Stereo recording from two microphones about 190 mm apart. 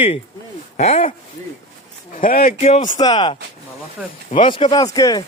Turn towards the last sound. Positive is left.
turn(degrees=20)  # may be behind; listen again after turning